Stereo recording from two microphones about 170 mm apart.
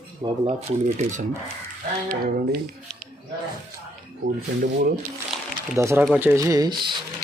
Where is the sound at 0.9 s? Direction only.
45° right (ahead or behind).